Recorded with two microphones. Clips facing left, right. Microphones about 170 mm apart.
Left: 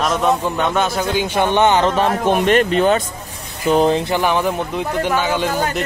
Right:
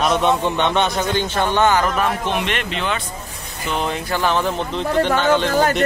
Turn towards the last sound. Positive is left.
turn(degrees=10)  # may be behind; listen again after turning